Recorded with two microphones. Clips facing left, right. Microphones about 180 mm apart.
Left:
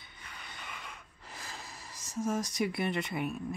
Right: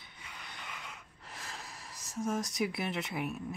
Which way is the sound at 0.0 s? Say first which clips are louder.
Even; centre (ahead or behind).